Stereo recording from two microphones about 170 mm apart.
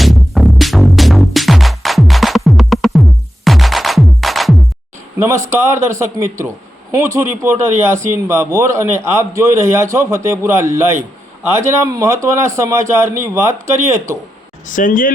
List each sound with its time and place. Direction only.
0.0 s music: centre (ahead or behind)
5.2 s a man's voice: 15° right (ahead or behind)
14.7 s speech: 50° left (ahead or behind)